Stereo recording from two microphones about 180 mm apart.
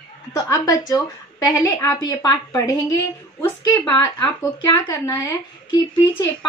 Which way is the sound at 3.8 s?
25° left (ahead or behind).